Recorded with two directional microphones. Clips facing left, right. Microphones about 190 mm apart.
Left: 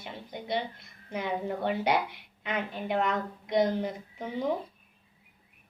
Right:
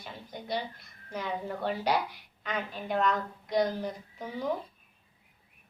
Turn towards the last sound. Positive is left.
turn(degrees=20)  # may be behind; listen again after turning